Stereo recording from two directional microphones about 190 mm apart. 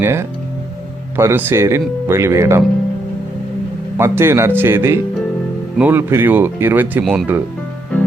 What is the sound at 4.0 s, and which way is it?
Speech, 15° right (ahead or behind).